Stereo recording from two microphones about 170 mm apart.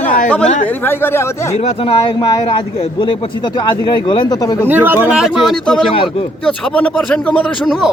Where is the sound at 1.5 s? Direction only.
35° left (ahead or behind).